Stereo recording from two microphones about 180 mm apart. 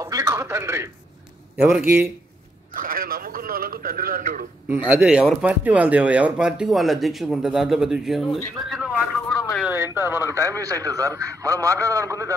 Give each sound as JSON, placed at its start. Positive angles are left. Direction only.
{"t": 0.0, "sound": "radio", "side_deg": -20}
{"t": 1.8, "sound": "a man's voice", "side_deg": -10}
{"t": 2.7, "sound": "a man's voice", "side_deg": -50}
{"t": 4.6, "sound": "speech", "side_deg": -10}
{"t": 9.6, "sound": "a sound", "side_deg": -10}
{"t": 9.9, "sound": "a man's voice", "side_deg": -15}